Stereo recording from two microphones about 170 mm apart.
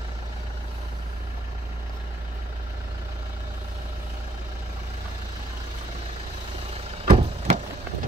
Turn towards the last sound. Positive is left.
turn(degrees=-45)  # may be behind; listen again after turning